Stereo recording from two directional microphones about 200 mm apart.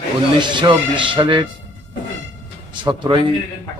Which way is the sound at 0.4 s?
25° right (ahead or behind).